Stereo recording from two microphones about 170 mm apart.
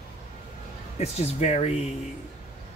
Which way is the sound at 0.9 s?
40° left (ahead or behind).